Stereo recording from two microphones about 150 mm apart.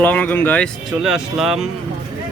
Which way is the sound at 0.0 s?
10° left (ahead or behind).